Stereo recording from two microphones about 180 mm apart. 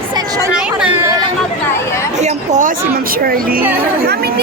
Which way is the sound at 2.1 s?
40° right (ahead or behind).